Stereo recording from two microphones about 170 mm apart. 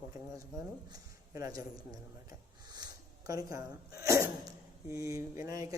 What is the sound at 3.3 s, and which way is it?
Speech, 20° right (ahead or behind).